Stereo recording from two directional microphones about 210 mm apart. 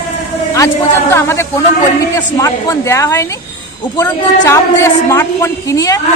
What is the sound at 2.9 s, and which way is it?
A man's voice, 15° left (ahead or behind).